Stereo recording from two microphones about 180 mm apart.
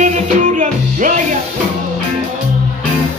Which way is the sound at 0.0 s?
45° right (ahead or behind).